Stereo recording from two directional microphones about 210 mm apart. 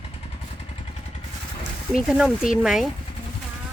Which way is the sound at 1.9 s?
Centre (ahead or behind).